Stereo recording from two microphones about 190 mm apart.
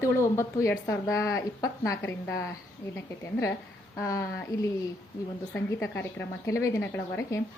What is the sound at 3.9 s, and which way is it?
A woman's voice, 15° left (ahead or behind).